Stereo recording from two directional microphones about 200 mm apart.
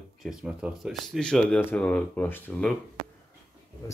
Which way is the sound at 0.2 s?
5° right (ahead or behind).